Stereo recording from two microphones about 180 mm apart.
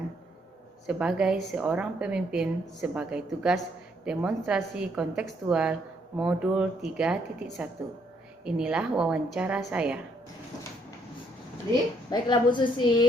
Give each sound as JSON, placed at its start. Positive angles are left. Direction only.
{"t": 0.9, "sound": "a woman's voice", "side_deg": -5}
{"t": 12.1, "sound": "a woman's voice", "side_deg": 25}